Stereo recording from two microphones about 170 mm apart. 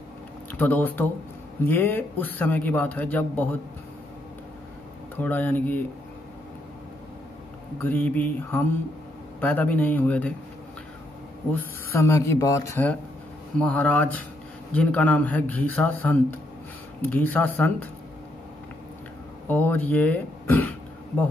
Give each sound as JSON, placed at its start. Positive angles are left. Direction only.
{"t": 0.5, "sound": "a man's voice", "side_deg": 10}
{"t": 5.1, "sound": "a man's voice", "side_deg": 10}
{"t": 7.8, "sound": "a man's voice", "side_deg": 10}
{"t": 11.5, "sound": "a man's voice", "side_deg": 15}
{"t": 13.6, "sound": "a man's voice", "side_deg": 10}
{"t": 19.4, "sound": "speech", "side_deg": 10}